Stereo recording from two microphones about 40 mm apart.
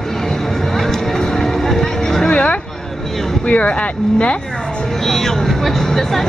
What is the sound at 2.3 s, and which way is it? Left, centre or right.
Speech, left.